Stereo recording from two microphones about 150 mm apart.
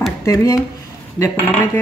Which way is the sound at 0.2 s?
20° left (ahead or behind).